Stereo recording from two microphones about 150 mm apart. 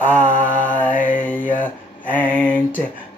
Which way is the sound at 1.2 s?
10° left (ahead or behind).